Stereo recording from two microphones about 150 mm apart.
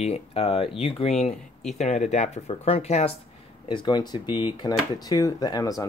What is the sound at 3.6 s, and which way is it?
Speech, 30° left (ahead or behind).